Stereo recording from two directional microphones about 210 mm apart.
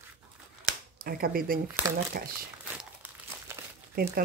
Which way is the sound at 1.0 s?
45° right (ahead or behind).